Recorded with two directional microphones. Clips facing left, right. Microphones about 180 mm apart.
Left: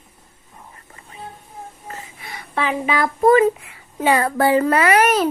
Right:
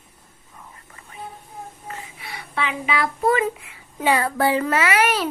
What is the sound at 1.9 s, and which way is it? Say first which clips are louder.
A child's voice: left 1 dB; 40° left (ahead or behind).